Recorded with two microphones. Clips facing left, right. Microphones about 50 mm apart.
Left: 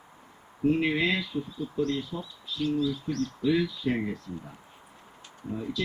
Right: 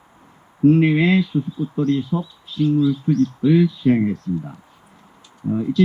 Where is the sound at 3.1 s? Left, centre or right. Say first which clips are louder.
Right 10 dB; right.